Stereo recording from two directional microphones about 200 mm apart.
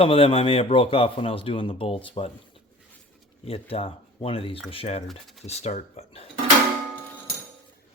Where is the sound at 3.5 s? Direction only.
30° left (ahead or behind).